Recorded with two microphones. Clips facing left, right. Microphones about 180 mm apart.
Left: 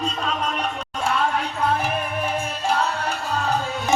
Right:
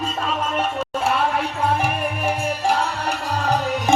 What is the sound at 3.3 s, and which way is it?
Music, 35° right (ahead or behind).